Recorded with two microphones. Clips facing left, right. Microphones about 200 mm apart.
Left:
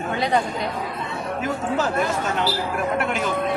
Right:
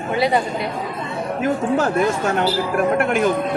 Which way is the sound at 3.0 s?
55° right (ahead or behind).